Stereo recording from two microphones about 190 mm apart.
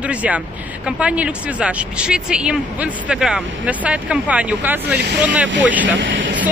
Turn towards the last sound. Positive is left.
turn(degrees=-80)